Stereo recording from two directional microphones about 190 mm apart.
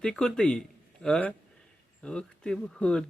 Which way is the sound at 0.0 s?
5° left (ahead or behind).